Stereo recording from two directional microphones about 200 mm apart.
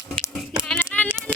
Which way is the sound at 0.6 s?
10° left (ahead or behind).